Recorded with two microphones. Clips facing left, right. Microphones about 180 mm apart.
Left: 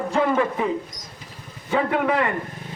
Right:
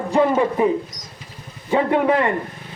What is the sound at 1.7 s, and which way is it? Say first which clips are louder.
Speech: right 4 dB; 30° right (ahead or behind).